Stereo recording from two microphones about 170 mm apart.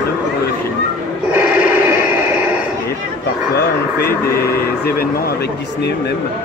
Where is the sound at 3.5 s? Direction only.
65° left (ahead or behind).